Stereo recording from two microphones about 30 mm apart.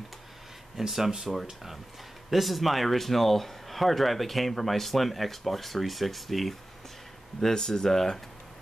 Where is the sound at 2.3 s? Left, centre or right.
Centre.